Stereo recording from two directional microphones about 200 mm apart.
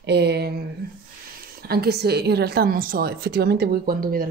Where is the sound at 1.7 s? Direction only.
50° right (ahead or behind).